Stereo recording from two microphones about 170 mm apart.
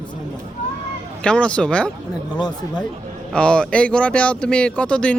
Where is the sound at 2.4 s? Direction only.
25° left (ahead or behind).